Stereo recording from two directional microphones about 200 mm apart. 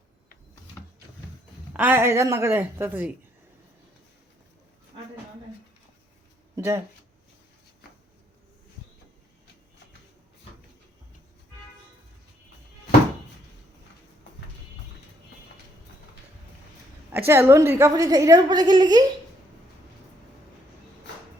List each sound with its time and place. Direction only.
1.7 s a woman's voice: 10° right (ahead or behind)
6.6 s speech: 15° right (ahead or behind)
17.1 s a woman's voice: 10° right (ahead or behind)